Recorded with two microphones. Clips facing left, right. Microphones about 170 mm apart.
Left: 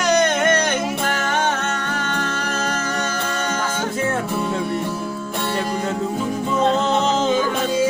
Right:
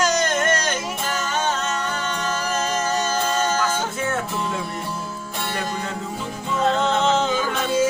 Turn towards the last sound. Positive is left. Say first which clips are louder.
# left 1 dB
turn(degrees=35)  # may be behind; listen again after turning